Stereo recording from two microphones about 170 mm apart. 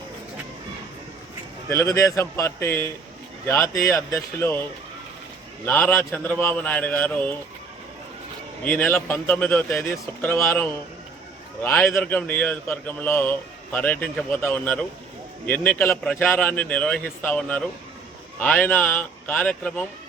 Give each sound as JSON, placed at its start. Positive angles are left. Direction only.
{"t": 1.7, "sound": "a man's voice", "side_deg": 15}
{"t": 5.6, "sound": "a man's voice", "side_deg": 10}
{"t": 8.6, "sound": "a man's voice", "side_deg": 10}